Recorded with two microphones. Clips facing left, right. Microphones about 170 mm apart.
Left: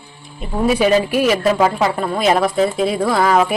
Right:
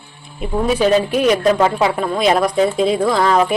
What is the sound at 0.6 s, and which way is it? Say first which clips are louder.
Speech: left 1 dB; 5° left (ahead or behind).